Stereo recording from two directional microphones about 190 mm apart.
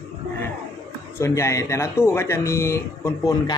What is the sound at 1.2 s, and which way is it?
Speech, 15° left (ahead or behind).